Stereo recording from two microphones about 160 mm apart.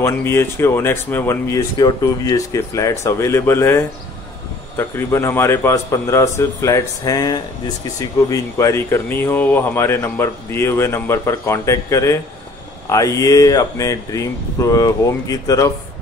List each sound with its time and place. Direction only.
0.0 s a man's voice: 15° left (ahead or behind)